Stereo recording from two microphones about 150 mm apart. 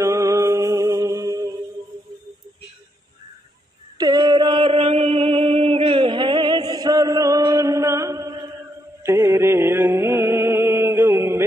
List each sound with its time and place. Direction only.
0.0 s music: 20° right (ahead or behind)
4.0 s a sound: 30° right (ahead or behind)
9.0 s music: 15° right (ahead or behind)